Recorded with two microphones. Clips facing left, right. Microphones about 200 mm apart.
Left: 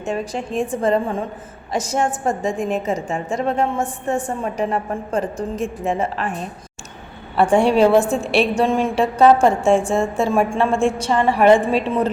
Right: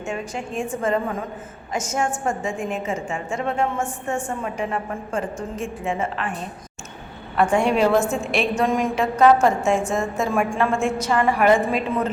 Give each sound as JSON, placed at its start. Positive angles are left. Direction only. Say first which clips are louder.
{"t": 0.0, "sound": "a woman's voice", "louder": "left 4 dB", "side_deg": 35}
{"t": 7.3, "sound": "a woman's voice", "louder": "left 4 dB", "side_deg": 30}